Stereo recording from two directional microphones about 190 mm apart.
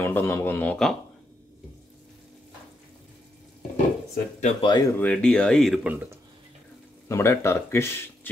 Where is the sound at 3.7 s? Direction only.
40° left (ahead or behind).